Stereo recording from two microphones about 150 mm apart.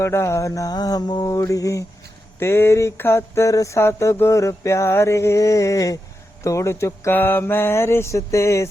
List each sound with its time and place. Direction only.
0.0 s mantra: 20° left (ahead or behind)